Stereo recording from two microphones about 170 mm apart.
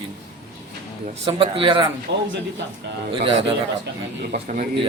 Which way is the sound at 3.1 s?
30° right (ahead or behind).